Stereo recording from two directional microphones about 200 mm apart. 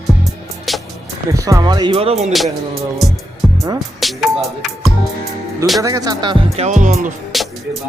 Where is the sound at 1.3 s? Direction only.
15° right (ahead or behind); by 2.3 s 30° right (ahead or behind).